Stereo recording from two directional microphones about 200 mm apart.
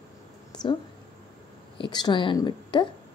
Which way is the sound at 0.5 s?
20° left (ahead or behind).